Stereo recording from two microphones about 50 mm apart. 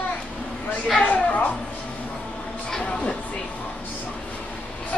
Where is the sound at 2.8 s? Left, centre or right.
Left.